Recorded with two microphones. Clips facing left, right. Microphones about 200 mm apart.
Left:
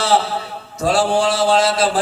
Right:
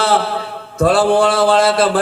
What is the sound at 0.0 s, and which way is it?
A man's voice, 55° right (ahead or behind).